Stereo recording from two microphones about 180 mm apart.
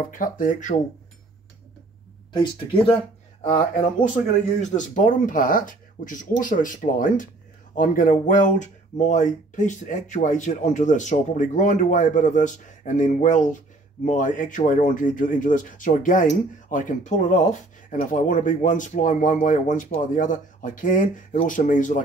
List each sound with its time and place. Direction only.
0.1 s speech: 50° left (ahead or behind)
2.3 s speech: 30° left (ahead or behind)
3.4 s speech: 45° left (ahead or behind)